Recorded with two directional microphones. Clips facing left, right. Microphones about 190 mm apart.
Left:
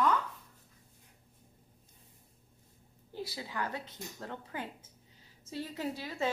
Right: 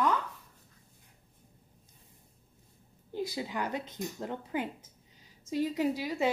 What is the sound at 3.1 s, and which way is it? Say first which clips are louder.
A woman's voice: right 6 dB; 20° right (ahead or behind).